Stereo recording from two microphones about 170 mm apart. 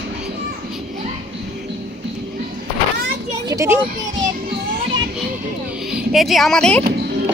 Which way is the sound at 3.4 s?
15° right (ahead or behind).